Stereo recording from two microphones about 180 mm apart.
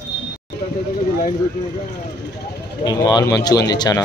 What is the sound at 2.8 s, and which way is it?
Speech, 20° left (ahead or behind).